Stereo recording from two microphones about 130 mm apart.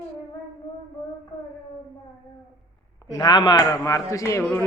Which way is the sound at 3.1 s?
35° left (ahead or behind).